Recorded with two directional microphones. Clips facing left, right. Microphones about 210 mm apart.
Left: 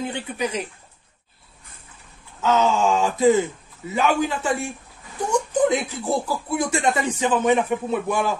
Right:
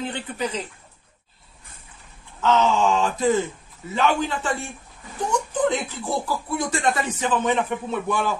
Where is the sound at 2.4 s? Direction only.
10° left (ahead or behind).